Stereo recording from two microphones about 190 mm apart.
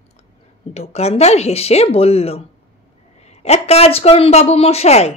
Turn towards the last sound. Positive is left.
turn(degrees=35)  # may be behind; listen again after turning